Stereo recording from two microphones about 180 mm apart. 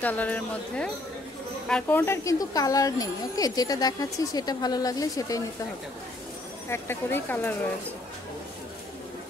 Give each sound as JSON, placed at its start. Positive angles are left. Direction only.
{"t": 0.0, "sound": "speech", "side_deg": 10}
{"t": 6.7, "sound": "speech", "side_deg": 10}